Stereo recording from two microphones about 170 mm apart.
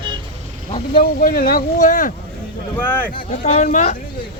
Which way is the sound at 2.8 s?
10° left (ahead or behind).